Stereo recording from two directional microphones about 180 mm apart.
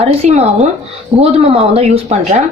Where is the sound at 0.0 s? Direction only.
35° right (ahead or behind).